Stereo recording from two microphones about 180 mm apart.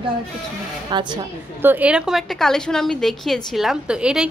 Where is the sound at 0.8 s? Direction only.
25° right (ahead or behind).